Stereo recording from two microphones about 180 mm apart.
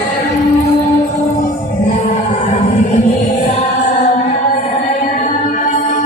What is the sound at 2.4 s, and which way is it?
Music, 40° left (ahead or behind).